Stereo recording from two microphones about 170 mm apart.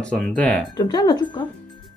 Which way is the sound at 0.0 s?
5° left (ahead or behind).